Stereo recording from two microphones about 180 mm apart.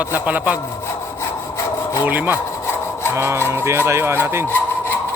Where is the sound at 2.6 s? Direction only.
15° left (ahead or behind).